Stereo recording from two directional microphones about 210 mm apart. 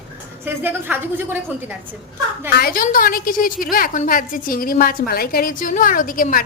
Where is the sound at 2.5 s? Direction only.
45° left (ahead or behind).